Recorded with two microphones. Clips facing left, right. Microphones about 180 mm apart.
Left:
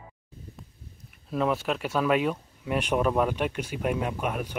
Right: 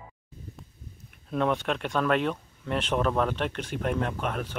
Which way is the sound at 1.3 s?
5° left (ahead or behind).